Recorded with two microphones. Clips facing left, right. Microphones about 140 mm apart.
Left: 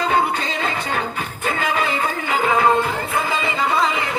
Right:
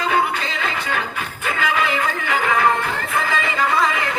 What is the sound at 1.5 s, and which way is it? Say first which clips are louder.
Music: even; 40° left (ahead or behind).